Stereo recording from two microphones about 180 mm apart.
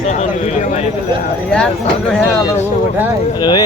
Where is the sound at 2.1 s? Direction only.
5° left (ahead or behind).